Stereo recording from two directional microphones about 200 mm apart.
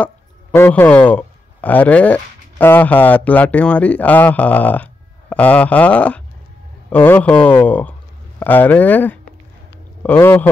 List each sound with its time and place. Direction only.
0.6 s speech: 10° left (ahead or behind)